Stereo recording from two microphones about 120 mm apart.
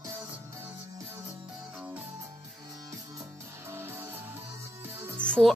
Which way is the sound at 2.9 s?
25° right (ahead or behind).